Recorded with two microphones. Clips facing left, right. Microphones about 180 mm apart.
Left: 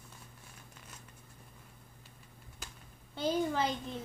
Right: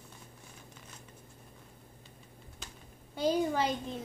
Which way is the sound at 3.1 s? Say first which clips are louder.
Right 3 dB; 15° right (ahead or behind).